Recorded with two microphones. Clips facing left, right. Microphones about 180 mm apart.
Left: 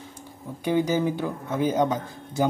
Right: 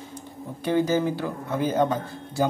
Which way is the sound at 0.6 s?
15° left (ahead or behind).